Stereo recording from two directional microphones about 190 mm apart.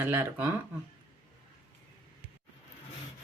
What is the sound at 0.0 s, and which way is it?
Speech, 10° right (ahead or behind).